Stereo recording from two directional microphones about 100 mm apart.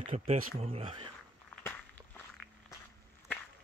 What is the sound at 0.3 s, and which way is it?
Speech, 90° right.